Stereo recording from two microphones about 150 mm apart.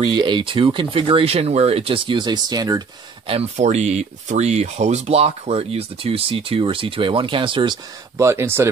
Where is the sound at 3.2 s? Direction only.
45° right (ahead or behind).